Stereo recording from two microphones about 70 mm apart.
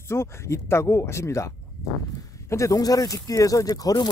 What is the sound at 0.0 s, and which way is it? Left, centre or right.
Speech, left.